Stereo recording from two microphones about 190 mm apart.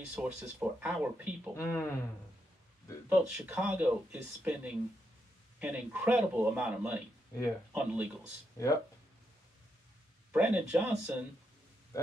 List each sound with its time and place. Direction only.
0.1 s speech: 5° right (ahead or behind)
1.6 s speech: 15° left (ahead or behind)
3.1 s speech: 5° right (ahead or behind)
8.6 s speech: 15° left (ahead or behind)
10.3 s speech: 10° right (ahead or behind)
11.9 s speech: 15° left (ahead or behind)